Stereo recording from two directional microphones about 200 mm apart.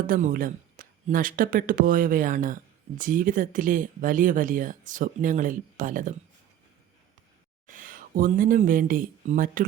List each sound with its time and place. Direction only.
0.1 s speech: 45° right (ahead or behind)
7.7 s speech: 45° right (ahead or behind)